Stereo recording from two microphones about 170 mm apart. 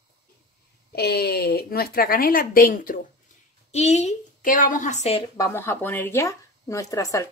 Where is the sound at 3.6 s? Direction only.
40° left (ahead or behind).